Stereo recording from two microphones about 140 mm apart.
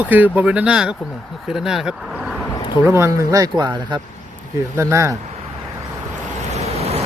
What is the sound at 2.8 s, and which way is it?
Speech, 20° right (ahead or behind).